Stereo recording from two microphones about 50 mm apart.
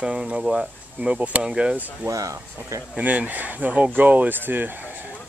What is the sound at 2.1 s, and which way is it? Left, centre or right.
Speech, right.